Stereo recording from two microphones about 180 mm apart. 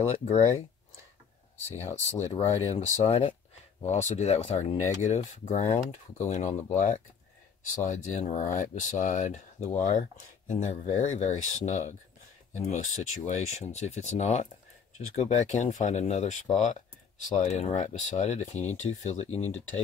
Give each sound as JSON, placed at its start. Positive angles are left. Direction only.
{"t": 0.2, "sound": "speech", "side_deg": 40}
{"t": 1.8, "sound": "speech", "side_deg": 40}